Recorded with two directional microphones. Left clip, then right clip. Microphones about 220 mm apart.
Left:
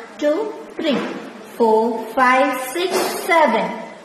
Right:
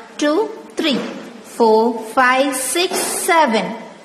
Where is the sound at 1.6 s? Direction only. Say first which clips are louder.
Right 2 dB; 25° right (ahead or behind).